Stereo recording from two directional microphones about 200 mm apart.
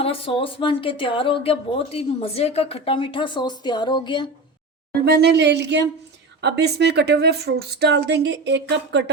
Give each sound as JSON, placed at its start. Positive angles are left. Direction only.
{"t": 0.0, "sound": "speech", "side_deg": 30}
{"t": 5.0, "sound": "a woman's voice", "side_deg": -55}